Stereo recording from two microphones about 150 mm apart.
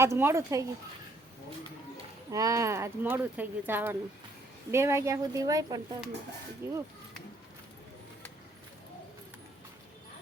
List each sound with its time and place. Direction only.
0.0 s speech: 15° right (ahead or behind)
2.3 s speech: 20° right (ahead or behind)